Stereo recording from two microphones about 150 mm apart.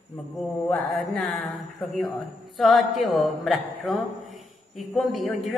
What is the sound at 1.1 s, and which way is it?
A woman's voice, 10° left (ahead or behind).